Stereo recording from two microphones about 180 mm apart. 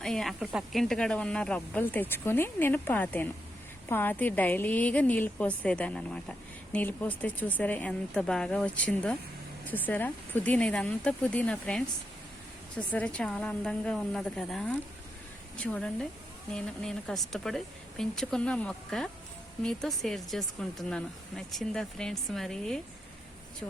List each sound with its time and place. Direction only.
0.0 s speech: centre (ahead or behind)
12.9 s speech: 5° left (ahead or behind)